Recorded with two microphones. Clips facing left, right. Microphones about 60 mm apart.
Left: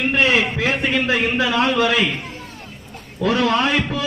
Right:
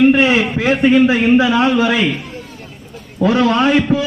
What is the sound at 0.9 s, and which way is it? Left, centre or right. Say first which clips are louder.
A man's voice: right 12 dB; right.